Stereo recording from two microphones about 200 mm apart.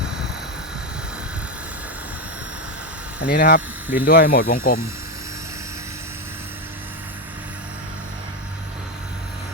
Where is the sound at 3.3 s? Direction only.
50° left (ahead or behind).